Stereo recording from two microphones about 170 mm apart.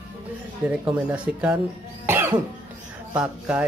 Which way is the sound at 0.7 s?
10° right (ahead or behind).